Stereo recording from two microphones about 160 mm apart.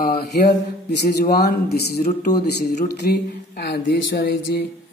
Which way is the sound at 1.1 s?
80° left.